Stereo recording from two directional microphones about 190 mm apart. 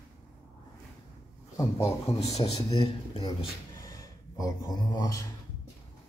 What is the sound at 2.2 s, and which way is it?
A man's voice, 35° left (ahead or behind).